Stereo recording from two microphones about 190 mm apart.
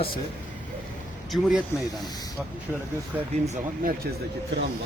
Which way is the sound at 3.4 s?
45° right (ahead or behind).